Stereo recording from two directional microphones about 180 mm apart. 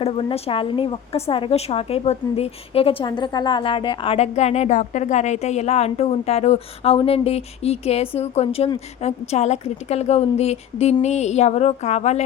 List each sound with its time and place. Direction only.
0.0 s a woman's voice: 30° left (ahead or behind)